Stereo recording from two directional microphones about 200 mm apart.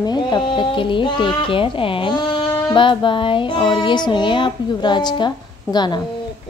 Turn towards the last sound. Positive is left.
turn(degrees=20)  # may be behind; listen again after turning